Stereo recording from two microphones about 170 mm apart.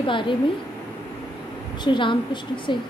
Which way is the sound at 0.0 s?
30° left (ahead or behind).